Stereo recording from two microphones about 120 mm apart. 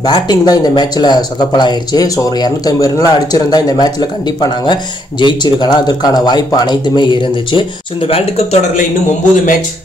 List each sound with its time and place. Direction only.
0.0 s speech: 35° left (ahead or behind); by 8.8 s 60° left (ahead or behind)